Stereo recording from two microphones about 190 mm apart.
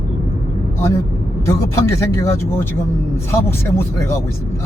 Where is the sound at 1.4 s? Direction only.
15° left (ahead or behind).